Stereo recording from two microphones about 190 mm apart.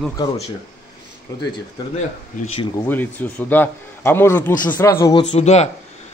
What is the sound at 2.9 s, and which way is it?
A man's voice, 10° left (ahead or behind).